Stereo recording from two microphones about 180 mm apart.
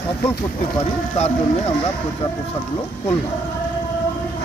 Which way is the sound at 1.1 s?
35° left (ahead or behind).